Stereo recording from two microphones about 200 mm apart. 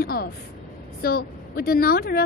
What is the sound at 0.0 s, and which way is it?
A woman's voice, 50° left (ahead or behind).